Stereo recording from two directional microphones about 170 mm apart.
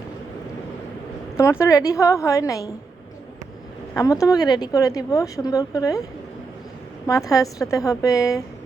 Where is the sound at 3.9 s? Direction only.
20° left (ahead or behind).